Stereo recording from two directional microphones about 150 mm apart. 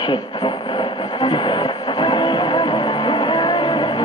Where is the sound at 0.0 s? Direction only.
25° left (ahead or behind).